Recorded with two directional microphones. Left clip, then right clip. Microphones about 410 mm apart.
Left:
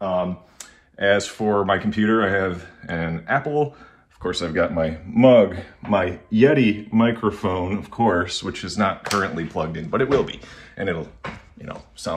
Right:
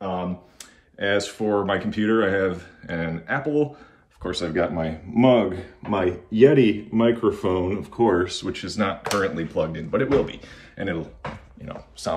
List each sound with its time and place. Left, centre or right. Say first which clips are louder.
0.9 s speech: left 4 dB; centre